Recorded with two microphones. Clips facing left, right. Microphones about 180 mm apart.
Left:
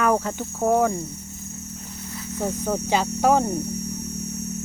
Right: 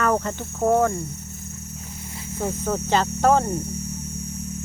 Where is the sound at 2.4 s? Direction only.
15° left (ahead or behind).